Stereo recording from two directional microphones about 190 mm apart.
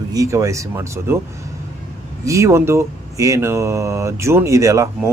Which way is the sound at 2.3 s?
15° right (ahead or behind).